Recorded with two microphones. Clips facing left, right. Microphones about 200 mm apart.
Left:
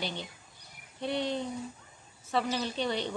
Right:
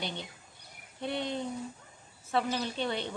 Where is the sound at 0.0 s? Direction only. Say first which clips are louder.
Left 1 dB; 55° right (ahead or behind).